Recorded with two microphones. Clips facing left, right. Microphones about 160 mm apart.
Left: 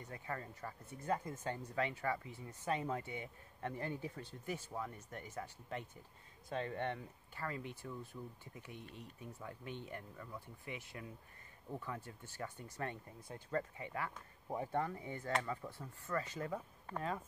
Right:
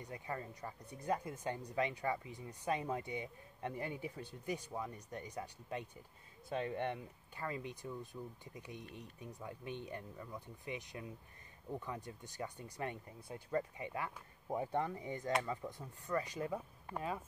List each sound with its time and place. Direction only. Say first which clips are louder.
0.0 s speech: right 1 dB; 15° right (ahead or behind)